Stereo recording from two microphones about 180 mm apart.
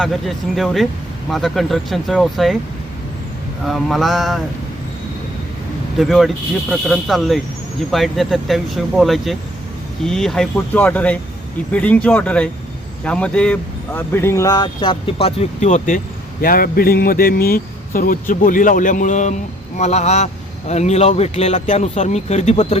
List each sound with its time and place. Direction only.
0.0 s speech: centre (ahead or behind)
3.7 s speech: centre (ahead or behind)
6.0 s speech: centre (ahead or behind); by 16.0 s 40° left (ahead or behind)
16.4 s speech: 55° left (ahead or behind)